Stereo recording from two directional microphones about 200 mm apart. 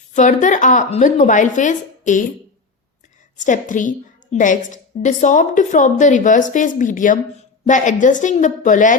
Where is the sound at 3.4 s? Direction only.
40° left (ahead or behind).